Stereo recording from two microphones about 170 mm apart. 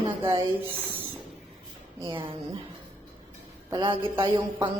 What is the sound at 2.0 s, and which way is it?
Mantra, 25° right (ahead or behind).